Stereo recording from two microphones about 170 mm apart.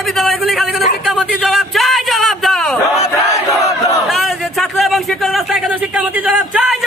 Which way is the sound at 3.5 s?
20° left (ahead or behind).